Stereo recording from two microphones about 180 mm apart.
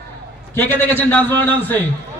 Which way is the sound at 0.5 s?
10° left (ahead or behind).